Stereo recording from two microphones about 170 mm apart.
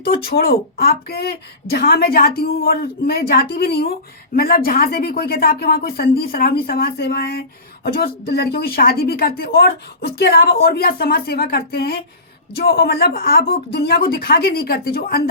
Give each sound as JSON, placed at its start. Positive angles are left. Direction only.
{"t": 0.0, "sound": "speech", "side_deg": 65}